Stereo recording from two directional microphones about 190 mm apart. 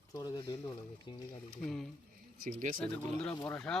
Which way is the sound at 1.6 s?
5° left (ahead or behind).